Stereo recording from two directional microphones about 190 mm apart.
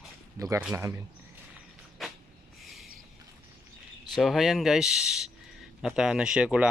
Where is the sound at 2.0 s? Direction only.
Centre (ahead or behind).